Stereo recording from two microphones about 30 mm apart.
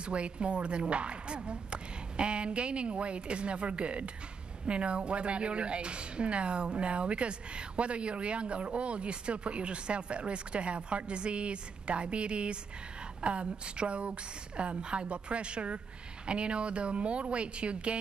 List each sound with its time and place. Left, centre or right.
0.0 s a woman's voice: right